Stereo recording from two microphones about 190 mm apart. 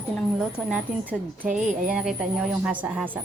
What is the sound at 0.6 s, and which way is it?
Speech, 5° right (ahead or behind).